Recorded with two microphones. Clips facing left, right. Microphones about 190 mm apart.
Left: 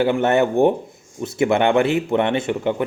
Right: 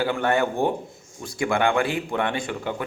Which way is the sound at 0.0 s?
20° left (ahead or behind).